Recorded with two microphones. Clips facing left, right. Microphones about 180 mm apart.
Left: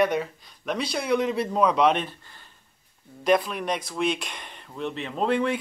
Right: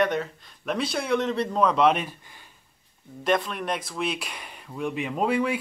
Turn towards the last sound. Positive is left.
turn(degrees=-5)  # may be behind; listen again after turning